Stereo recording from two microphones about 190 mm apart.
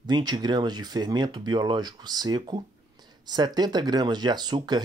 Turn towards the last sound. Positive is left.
turn(degrees=-20)  # may be behind; listen again after turning